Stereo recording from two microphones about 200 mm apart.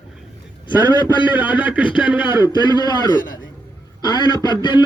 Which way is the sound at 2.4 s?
20° left (ahead or behind).